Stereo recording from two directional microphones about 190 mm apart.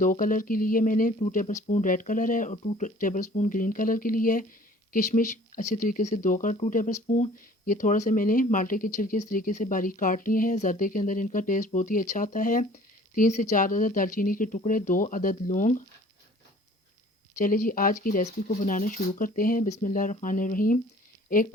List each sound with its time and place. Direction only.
0.0 s speech: 45° left (ahead or behind)
17.3 s speech: 45° left (ahead or behind)